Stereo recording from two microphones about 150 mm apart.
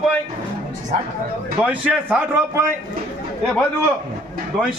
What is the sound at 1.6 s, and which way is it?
A man's voice, 10° right (ahead or behind).